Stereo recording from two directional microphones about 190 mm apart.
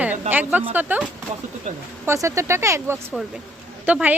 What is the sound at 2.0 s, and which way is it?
A woman's voice, 15° right (ahead or behind).